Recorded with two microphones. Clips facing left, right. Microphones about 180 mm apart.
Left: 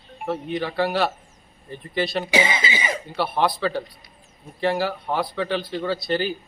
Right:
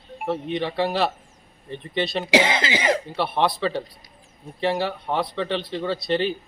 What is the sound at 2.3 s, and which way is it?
Speech, 75° right (ahead or behind).